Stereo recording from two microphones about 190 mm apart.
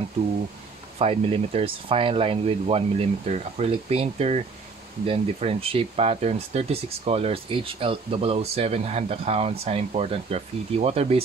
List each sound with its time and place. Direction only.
0.9 s speech: 30° right (ahead or behind)